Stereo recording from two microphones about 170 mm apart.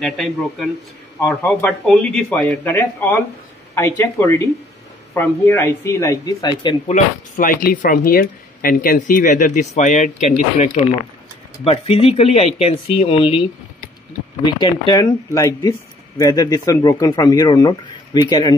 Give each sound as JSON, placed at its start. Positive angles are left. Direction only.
{"t": 0.0, "sound": "a man's voice", "side_deg": 0}
{"t": 6.9, "sound": "speech", "side_deg": 55}
{"t": 11.6, "sound": "speech", "side_deg": 35}